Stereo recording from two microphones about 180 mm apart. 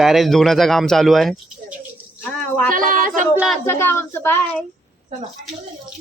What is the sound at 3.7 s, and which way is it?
Speech, 15° left (ahead or behind).